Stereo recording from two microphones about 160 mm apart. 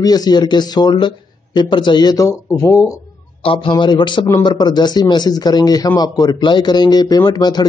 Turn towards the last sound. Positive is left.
turn(degrees=25)  # may be behind; listen again after turning